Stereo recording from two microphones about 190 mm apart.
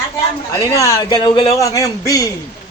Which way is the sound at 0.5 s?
15° left (ahead or behind).